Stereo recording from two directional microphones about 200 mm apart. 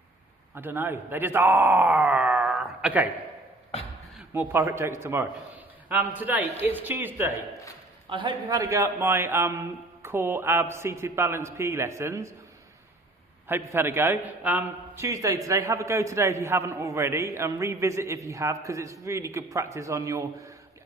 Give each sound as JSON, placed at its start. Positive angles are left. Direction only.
{"t": 0.6, "sound": "speech", "side_deg": -10}
{"t": 4.3, "sound": "a man's voice", "side_deg": -10}
{"t": 8.1, "sound": "a man's voice", "side_deg": -20}
{"t": 13.5, "sound": "a man's voice", "side_deg": -10}